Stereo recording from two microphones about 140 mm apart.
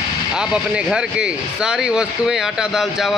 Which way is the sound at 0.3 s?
5° right (ahead or behind).